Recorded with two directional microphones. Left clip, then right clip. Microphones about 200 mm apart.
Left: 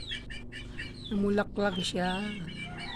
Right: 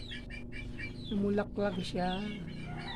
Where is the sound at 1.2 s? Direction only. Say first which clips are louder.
Left 4 dB; 20° left (ahead or behind).